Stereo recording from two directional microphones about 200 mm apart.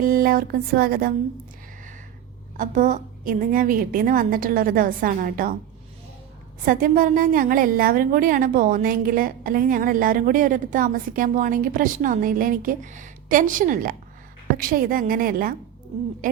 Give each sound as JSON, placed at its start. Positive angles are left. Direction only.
{"t": 0.0, "sound": "a woman's voice", "side_deg": -45}
{"t": 2.6, "sound": "a woman's voice", "side_deg": -40}
{"t": 6.7, "sound": "a woman's voice", "side_deg": -45}